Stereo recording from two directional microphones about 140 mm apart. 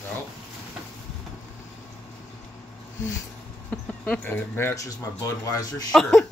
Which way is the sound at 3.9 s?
10° left (ahead or behind).